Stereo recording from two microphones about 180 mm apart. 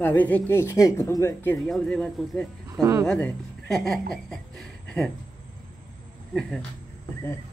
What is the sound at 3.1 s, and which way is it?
Speech, 5° left (ahead or behind).